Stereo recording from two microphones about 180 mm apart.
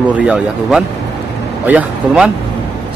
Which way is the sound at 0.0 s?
5° right (ahead or behind).